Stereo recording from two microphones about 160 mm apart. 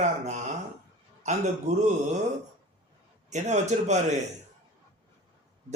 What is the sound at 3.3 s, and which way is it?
Speech, 45° right (ahead or behind).